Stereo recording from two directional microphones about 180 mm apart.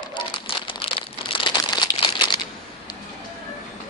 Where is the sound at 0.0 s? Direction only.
25° left (ahead or behind).